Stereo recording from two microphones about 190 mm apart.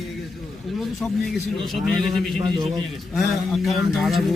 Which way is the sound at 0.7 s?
Centre (ahead or behind).